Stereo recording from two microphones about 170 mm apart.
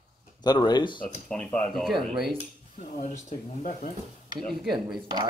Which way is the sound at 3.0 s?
45° left (ahead or behind).